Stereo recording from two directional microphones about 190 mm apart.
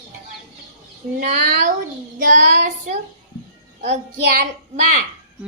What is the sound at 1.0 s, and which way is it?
Speech, 30° right (ahead or behind).